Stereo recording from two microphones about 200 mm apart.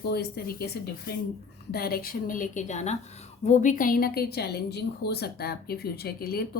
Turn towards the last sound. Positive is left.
turn(degrees=50)  # may be behind; listen again after turning